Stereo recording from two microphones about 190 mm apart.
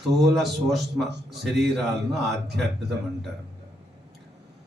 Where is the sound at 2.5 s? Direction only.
60° right (ahead or behind).